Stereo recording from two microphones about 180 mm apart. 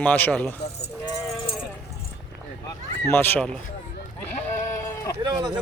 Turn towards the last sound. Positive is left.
turn(degrees=-20)  # may be behind; listen again after turning